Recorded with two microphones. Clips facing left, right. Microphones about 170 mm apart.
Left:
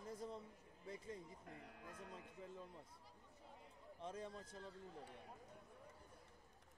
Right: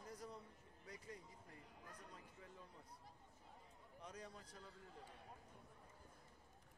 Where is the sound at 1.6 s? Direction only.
70° left (ahead or behind).